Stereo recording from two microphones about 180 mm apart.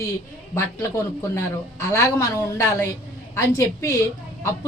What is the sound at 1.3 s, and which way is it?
A woman's voice, 15° left (ahead or behind).